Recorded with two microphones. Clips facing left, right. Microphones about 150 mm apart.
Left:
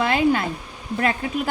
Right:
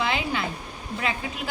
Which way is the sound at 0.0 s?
50° left (ahead or behind).